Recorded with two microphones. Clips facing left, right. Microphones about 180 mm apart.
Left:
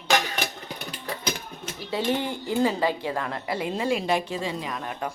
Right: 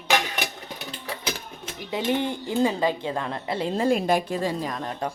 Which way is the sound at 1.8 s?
15° right (ahead or behind).